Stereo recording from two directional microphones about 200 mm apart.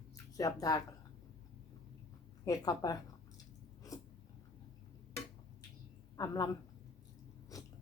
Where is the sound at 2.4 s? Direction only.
15° left (ahead or behind).